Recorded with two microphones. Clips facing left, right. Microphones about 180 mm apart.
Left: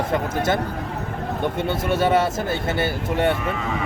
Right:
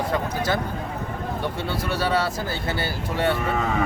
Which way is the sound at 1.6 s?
20° left (ahead or behind).